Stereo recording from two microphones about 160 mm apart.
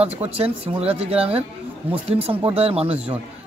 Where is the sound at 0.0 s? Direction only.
40° right (ahead or behind).